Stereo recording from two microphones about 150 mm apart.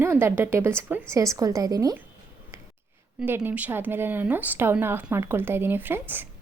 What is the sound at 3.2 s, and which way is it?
A woman's voice, 15° right (ahead or behind).